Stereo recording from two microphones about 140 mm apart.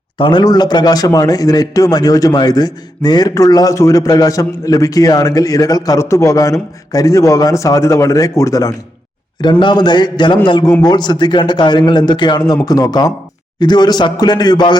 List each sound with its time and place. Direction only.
0.2 s speech: 35° left (ahead or behind)
9.4 s a man's voice: 35° left (ahead or behind)